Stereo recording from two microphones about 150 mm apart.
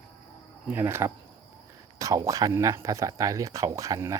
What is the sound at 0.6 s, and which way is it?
Speech, 15° right (ahead or behind).